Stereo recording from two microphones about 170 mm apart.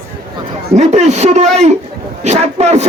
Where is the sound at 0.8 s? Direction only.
45° right (ahead or behind).